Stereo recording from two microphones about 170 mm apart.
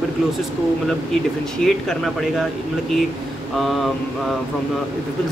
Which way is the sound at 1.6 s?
Centre (ahead or behind).